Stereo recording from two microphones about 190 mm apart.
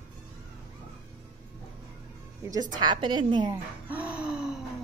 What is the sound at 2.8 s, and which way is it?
Speech, 25° right (ahead or behind).